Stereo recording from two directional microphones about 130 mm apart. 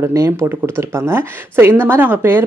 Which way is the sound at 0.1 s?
20° right (ahead or behind).